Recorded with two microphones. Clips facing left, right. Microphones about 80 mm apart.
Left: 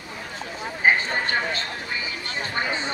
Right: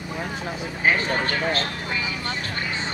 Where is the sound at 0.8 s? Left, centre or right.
Left.